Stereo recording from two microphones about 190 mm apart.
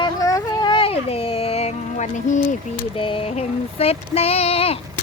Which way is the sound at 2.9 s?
30° left (ahead or behind).